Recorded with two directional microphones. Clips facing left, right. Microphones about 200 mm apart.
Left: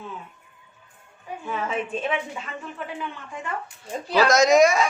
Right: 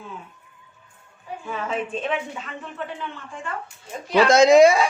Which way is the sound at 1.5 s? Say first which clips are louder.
Even; 5° left (ahead or behind).